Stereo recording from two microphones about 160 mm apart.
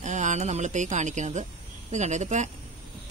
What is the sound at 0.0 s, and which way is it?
Speech, 50° right (ahead or behind).